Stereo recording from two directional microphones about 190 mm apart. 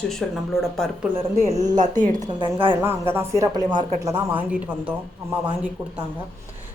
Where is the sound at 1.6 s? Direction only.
40° right (ahead or behind).